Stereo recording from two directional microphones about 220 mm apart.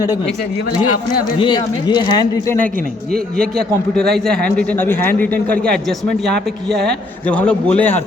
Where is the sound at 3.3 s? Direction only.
Centre (ahead or behind).